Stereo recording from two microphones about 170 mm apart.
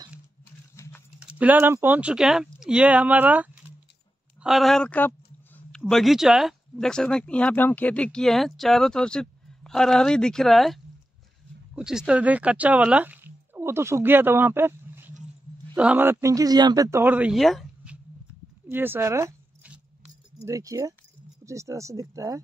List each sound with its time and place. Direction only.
1.2 s speech: 10° right (ahead or behind)
18.7 s zipper: 15° right (ahead or behind)
20.4 s speech: 20° right (ahead or behind)